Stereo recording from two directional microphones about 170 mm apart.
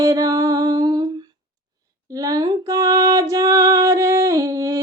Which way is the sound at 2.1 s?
20° right (ahead or behind).